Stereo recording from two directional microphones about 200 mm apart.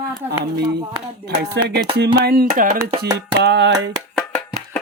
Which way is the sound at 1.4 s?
55° right (ahead or behind).